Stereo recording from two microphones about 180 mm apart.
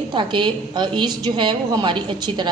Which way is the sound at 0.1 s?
25° right (ahead or behind).